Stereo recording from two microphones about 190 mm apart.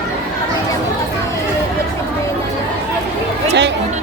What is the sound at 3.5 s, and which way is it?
Speech, 65° right (ahead or behind).